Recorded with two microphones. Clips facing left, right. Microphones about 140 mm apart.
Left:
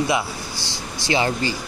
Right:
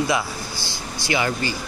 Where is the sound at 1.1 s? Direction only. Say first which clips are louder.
Left 2 dB; 30° left (ahead or behind).